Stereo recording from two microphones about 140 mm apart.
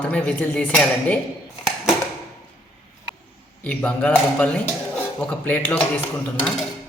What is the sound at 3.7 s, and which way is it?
A woman's voice, 10° left (ahead or behind).